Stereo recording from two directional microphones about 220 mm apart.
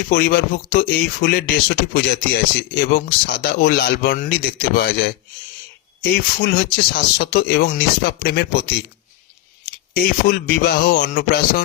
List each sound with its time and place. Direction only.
0.1 s speech: 45° left (ahead or behind)
9.9 s a man's voice: 40° left (ahead or behind)